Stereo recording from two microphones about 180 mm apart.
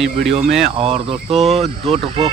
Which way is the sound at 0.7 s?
35° right (ahead or behind).